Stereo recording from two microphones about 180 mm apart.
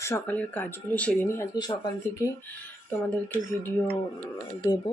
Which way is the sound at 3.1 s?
10° left (ahead or behind).